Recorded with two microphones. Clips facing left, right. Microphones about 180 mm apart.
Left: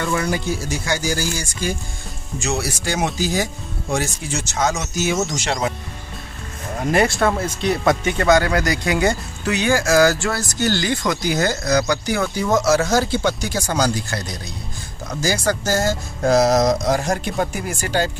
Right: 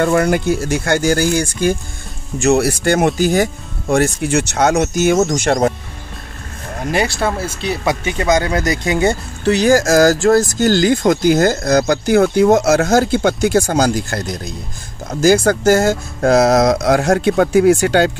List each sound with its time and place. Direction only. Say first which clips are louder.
0.0 s speech: right 8 dB; 55° right (ahead or behind)
7.1 s speech: even; centre (ahead or behind)
8.2 s speech: right 2 dB; 20° right (ahead or behind); by 18.1 s 70° right (ahead or behind)